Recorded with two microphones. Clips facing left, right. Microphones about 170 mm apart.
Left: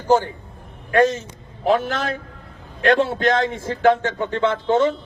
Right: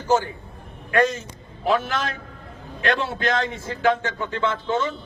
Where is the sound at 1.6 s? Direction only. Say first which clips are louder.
Left 3 dB; 40° left (ahead or behind).